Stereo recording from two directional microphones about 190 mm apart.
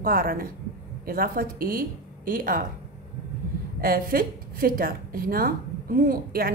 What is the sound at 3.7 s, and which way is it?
A woman's voice, 50° right (ahead or behind).